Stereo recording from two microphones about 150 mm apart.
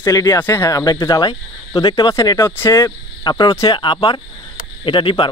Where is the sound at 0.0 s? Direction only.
20° left (ahead or behind).